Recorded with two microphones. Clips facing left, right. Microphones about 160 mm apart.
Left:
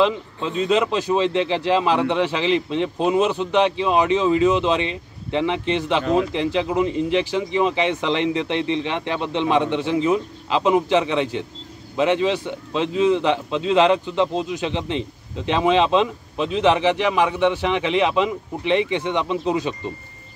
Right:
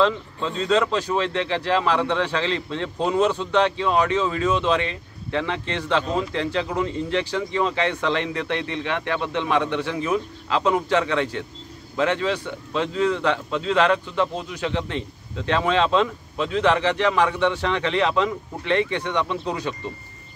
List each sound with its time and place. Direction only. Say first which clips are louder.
0.0 s a man's voice: left 1 dB; 15° left (ahead or behind)